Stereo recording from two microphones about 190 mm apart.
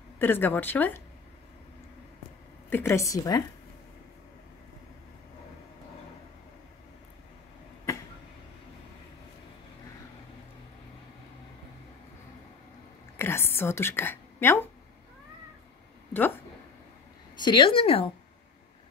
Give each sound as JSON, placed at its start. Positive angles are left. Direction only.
{"t": 0.2, "sound": "a woman's voice", "side_deg": 10}
{"t": 2.7, "sound": "a woman's voice", "side_deg": 10}
{"t": 13.2, "sound": "whispering", "side_deg": 10}
{"t": 16.1, "sound": "speech", "side_deg": 10}
{"t": 17.5, "sound": "a woman's voice", "side_deg": 25}